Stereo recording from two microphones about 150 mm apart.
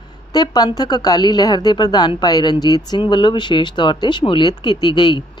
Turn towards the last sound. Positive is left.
turn(degrees=30)  # may be behind; listen again after turning